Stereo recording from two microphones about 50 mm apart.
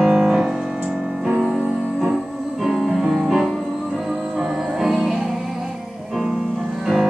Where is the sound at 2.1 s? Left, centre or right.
Centre.